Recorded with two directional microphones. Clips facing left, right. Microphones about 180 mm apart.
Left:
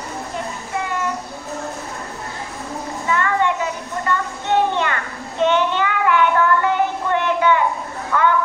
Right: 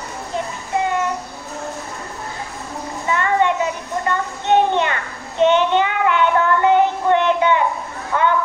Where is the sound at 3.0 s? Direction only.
20° right (ahead or behind).